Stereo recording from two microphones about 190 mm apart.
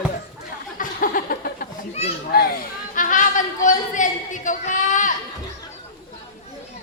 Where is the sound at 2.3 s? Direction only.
50° left (ahead or behind).